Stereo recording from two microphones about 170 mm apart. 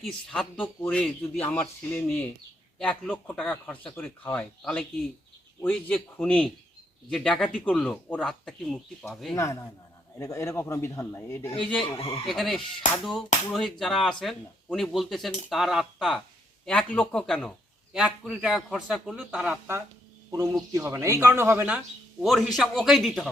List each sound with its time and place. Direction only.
0.0 s speech: 5° left (ahead or behind)
9.3 s speech: 15° left (ahead or behind)
11.8 s speech: 30° left (ahead or behind)
12.3 s speech: centre (ahead or behind)
22.2 s speech: centre (ahead or behind)